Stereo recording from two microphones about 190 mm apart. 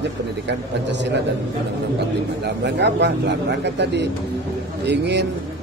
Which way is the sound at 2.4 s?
65° right (ahead or behind).